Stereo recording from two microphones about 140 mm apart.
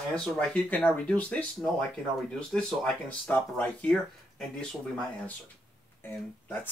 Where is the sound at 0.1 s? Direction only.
5° left (ahead or behind).